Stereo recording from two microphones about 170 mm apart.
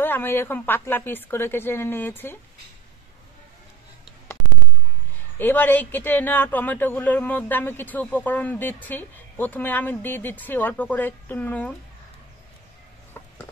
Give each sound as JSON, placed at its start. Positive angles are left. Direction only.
{"t": 0.0, "sound": "speech", "side_deg": 10}
{"t": 5.4, "sound": "speech", "side_deg": 10}